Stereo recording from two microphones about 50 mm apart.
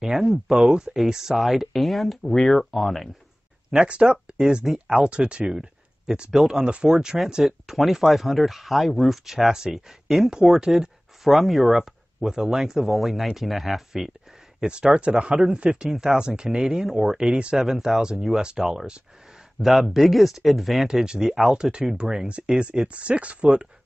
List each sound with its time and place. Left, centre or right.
0.0 s speech: centre
3.8 s speech: centre
5.5 s a sound: centre
6.3 s speech: centre
7.4 s speech: centre
14.6 s speech: centre
19.9 s speech: centre
21.5 s speech: centre